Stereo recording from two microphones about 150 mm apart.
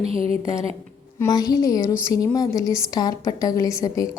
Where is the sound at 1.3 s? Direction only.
25° left (ahead or behind).